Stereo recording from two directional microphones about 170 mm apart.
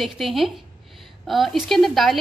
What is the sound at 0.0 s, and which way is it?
A woman's voice, centre (ahead or behind).